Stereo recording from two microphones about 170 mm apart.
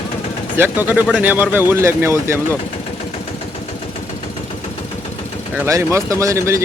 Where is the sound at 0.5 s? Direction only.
10° right (ahead or behind).